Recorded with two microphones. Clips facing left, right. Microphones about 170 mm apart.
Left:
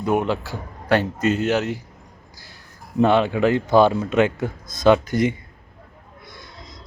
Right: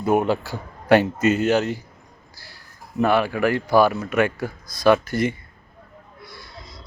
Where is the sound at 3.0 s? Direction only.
20° left (ahead or behind).